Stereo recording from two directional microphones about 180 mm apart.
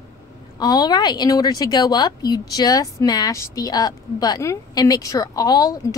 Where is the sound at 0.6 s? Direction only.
20° left (ahead or behind).